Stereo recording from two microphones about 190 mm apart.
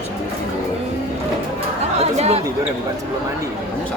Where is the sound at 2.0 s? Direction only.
35° right (ahead or behind).